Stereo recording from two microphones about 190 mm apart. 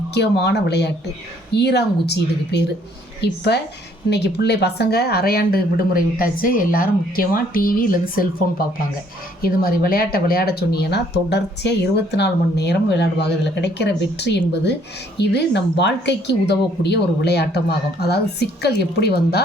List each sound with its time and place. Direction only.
0.1 s speech: 60° left (ahead or behind)
9.4 s speech: 50° left (ahead or behind)